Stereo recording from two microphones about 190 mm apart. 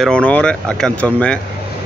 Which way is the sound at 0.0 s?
5° left (ahead or behind).